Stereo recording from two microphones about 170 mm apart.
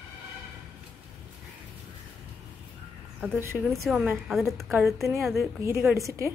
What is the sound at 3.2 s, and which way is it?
Speech, 15° right (ahead or behind).